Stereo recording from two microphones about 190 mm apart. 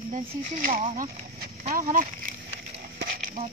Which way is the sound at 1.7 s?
40° right (ahead or behind).